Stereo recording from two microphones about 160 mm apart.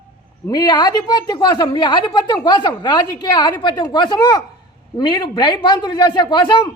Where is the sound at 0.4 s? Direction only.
25° left (ahead or behind).